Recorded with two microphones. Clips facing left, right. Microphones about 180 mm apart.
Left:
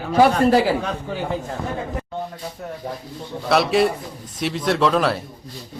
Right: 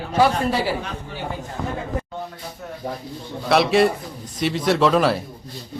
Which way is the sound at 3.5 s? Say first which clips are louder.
Right 1 dB; centre (ahead or behind).